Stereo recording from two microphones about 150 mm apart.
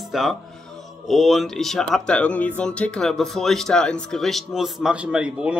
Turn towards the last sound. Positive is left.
turn(degrees=-5)  # may be behind; listen again after turning